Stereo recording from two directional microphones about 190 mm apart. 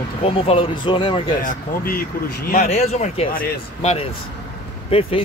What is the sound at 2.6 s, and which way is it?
Speech, 35° left (ahead or behind).